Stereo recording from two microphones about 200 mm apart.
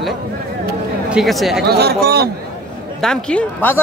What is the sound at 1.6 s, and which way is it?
Speech, 55° right (ahead or behind).